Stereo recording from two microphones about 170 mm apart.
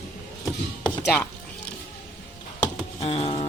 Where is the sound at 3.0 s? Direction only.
35° left (ahead or behind).